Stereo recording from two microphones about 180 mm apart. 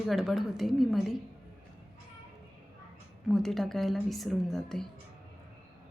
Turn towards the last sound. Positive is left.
turn(degrees=0)  # may be behind; listen again after turning